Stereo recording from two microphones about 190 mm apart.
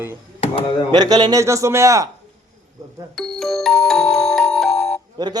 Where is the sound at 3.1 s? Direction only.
Centre (ahead or behind).